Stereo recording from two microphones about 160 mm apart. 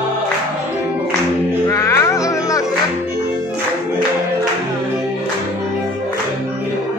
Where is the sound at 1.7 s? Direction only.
20° left (ahead or behind).